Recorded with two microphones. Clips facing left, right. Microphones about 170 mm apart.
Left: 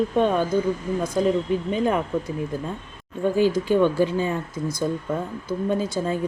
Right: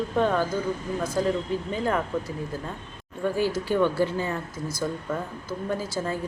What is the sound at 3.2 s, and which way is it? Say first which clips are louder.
Speech: left 5 dB; 20° left (ahead or behind).